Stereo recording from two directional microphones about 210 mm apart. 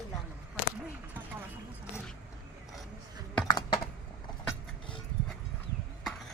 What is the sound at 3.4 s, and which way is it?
Typing, 20° left (ahead or behind).